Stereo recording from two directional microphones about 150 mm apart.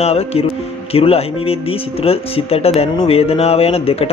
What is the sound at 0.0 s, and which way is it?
A man's voice, 45° left (ahead or behind).